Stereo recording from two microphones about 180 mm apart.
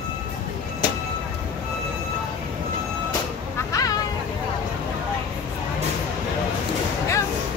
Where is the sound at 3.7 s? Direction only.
20° left (ahead or behind).